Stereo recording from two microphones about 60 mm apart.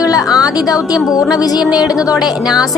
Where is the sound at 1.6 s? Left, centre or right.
Centre.